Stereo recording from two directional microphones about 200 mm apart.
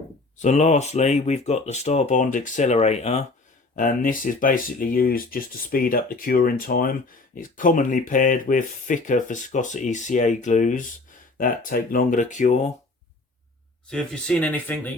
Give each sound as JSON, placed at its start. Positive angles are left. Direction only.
{"t": 0.3, "sound": "speech", "side_deg": 35}
{"t": 3.8, "sound": "speech", "side_deg": 40}
{"t": 13.9, "sound": "speech", "side_deg": 5}